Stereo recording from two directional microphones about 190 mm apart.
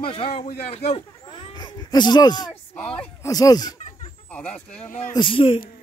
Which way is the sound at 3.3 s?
20° left (ahead or behind).